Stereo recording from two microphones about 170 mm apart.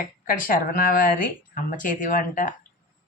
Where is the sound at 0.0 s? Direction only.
55° left (ahead or behind).